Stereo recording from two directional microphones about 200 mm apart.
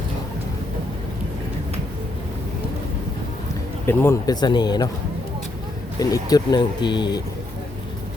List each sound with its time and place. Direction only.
3.8 s speech: 15° left (ahead or behind)
6.0 s speech: 20° left (ahead or behind)